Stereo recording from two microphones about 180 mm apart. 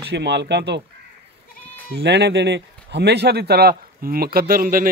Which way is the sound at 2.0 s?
70° right (ahead or behind).